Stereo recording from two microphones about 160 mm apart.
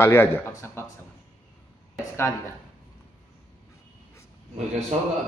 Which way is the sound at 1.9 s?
15° left (ahead or behind).